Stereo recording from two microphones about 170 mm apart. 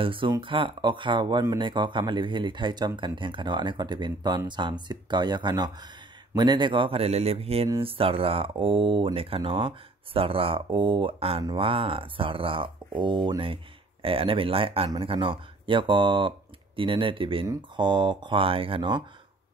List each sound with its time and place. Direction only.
0.0 s speech: 30° right (ahead or behind)